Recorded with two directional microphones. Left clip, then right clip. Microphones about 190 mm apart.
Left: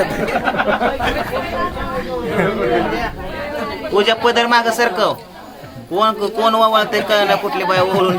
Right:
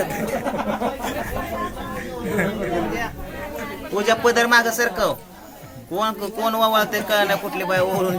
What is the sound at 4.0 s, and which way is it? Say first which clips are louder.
A man's voice: left 4 dB; 5° left (ahead or behind).